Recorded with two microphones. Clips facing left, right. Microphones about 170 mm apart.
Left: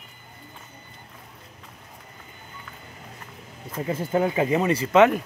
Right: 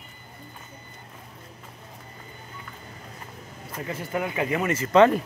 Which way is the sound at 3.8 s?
25° left (ahead or behind).